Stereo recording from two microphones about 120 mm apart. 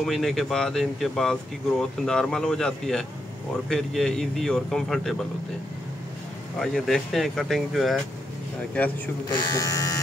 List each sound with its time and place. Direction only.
0.0 s speech: centre (ahead or behind)
6.6 s speech: 5° left (ahead or behind)
8.7 s a man's voice: 10° left (ahead or behind)
9.3 s speech: 30° left (ahead or behind)